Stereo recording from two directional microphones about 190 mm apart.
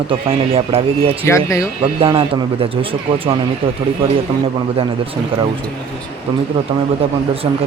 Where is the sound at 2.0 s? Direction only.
25° right (ahead or behind).